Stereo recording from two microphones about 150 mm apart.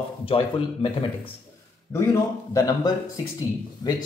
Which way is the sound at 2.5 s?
25° left (ahead or behind).